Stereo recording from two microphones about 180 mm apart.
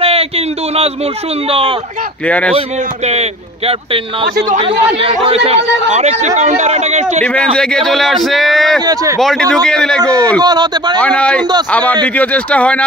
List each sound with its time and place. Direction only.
0.0 s a sound: 30° right (ahead or behind)
1.5 s speech: 30° right (ahead or behind)
2.2 s speech: 5° left (ahead or behind)
3.1 s speech: 35° right (ahead or behind)
7.2 s speech: 5° left (ahead or behind)
8.8 s a man's voice: 20° right (ahead or behind)
9.2 s speech: centre (ahead or behind)
10.4 s speech: 25° right (ahead or behind)
11.0 s speech: 5° left (ahead or behind)